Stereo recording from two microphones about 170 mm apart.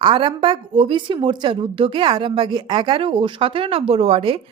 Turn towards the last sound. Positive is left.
turn(degrees=-35)  # may be behind; listen again after turning